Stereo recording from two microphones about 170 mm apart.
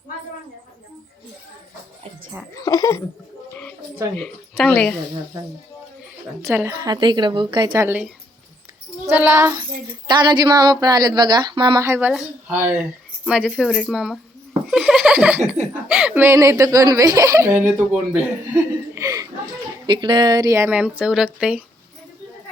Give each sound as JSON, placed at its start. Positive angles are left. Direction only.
{"t": 2.6, "sound": "speech", "side_deg": 20}
{"t": 4.2, "sound": "speech", "side_deg": 5}
{"t": 6.5, "sound": "speech", "side_deg": -15}
{"t": 7.9, "sound": "speech", "side_deg": -10}